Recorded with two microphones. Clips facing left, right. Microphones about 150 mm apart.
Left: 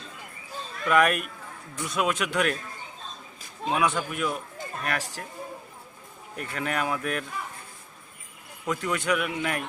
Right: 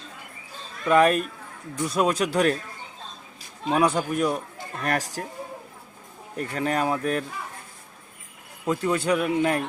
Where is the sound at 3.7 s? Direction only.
35° right (ahead or behind).